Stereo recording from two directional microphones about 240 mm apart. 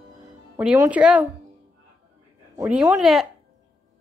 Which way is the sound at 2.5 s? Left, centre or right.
Centre.